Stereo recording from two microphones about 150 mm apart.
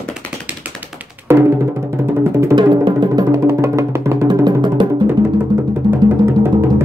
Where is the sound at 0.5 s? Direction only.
10° right (ahead or behind).